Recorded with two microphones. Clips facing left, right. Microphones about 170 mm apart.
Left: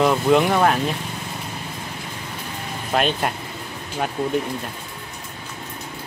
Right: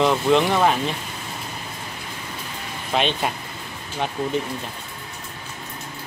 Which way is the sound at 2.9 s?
5° left (ahead or behind).